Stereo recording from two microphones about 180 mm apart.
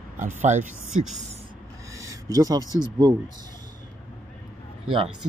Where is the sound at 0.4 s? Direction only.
45° right (ahead or behind).